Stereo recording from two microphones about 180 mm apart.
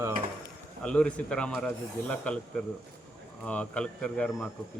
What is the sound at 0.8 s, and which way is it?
Speech, 5° left (ahead or behind).